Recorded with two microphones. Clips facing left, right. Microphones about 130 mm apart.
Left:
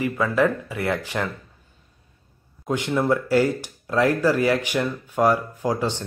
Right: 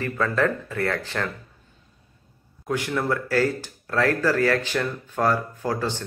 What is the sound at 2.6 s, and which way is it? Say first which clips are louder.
Speech: left 3 dB; 20° left (ahead or behind).